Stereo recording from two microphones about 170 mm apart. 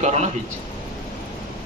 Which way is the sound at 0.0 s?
40° right (ahead or behind).